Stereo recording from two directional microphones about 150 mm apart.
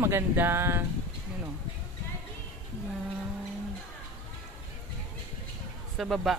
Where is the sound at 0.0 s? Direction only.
15° right (ahead or behind).